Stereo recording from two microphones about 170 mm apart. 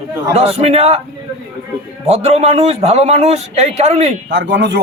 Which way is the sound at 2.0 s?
35° right (ahead or behind).